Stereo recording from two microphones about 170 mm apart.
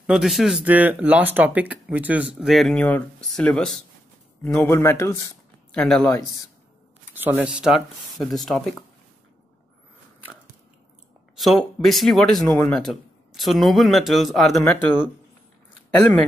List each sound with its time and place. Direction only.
0.0 s speech: centre (ahead or behind)
4.6 s speech: 15° left (ahead or behind)
5.7 s speech: 5° left (ahead or behind)
7.2 s speech: 10° right (ahead or behind)
11.3 s speech: centre (ahead or behind)